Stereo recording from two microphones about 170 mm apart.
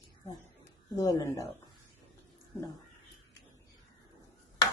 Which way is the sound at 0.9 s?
20° left (ahead or behind).